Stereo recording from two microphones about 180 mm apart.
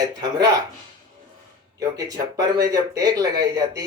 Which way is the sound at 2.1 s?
20° right (ahead or behind).